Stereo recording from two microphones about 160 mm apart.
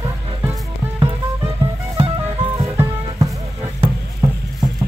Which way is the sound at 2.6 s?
20° right (ahead or behind).